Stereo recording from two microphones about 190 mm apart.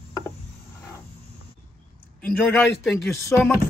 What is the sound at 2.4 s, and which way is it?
A man's voice, 10° left (ahead or behind).